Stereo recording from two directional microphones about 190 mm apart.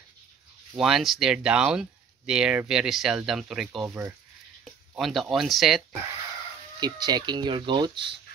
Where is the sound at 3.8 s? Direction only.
10° right (ahead or behind).